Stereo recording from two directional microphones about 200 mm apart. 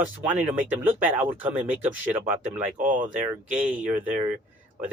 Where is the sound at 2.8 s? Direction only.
40° right (ahead or behind).